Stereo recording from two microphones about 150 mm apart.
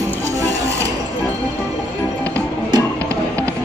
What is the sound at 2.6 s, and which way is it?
Music, 25° right (ahead or behind).